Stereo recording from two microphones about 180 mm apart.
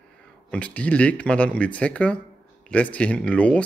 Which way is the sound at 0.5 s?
10° left (ahead or behind).